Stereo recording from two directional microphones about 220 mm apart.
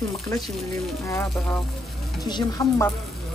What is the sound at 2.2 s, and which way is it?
Speech, 20° left (ahead or behind).